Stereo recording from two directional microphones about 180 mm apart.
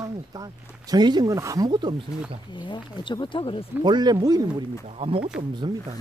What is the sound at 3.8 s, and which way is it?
Speech, 25° right (ahead or behind).